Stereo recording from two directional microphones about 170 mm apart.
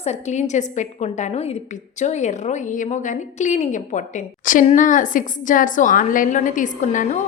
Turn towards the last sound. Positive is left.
turn(degrees=45)  # may be behind; listen again after turning